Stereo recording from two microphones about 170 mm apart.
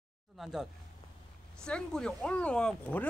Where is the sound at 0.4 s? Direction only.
5° right (ahead or behind).